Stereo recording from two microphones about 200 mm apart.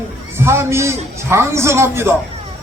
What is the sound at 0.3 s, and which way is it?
A man's voice, 15° right (ahead or behind).